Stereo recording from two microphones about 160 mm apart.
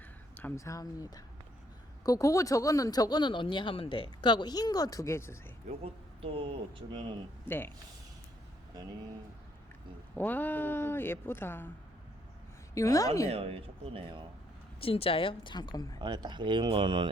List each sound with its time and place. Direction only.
0.3 s speech: 15° left (ahead or behind)
5.8 s speech: 35° right (ahead or behind)
7.4 s speech: 15° left (ahead or behind)
10.2 s speech: 10° left (ahead or behind)
12.7 s speech: 20° left (ahead or behind)
13.3 s speech: 35° right (ahead or behind)
14.8 s a woman's voice: 35° left (ahead or behind)
16.0 s speech: 25° right (ahead or behind)